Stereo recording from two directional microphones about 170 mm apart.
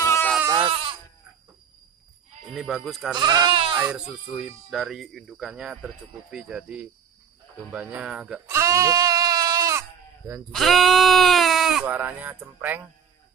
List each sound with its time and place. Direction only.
0.0 s goat: 15° left (ahead or behind)
0.5 s sheep: 30° right (ahead or behind)
2.5 s speech: centre (ahead or behind)
3.2 s speech: 25° right (ahead or behind)
3.9 s speech: 5° right (ahead or behind)
8.5 s bleat: 15° right (ahead or behind)
10.5 s speech: centre (ahead or behind)